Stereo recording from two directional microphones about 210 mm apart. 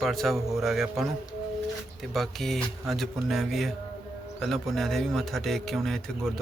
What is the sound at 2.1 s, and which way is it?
A man's voice, centre (ahead or behind).